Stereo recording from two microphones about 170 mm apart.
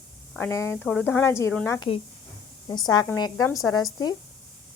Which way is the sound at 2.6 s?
25° left (ahead or behind).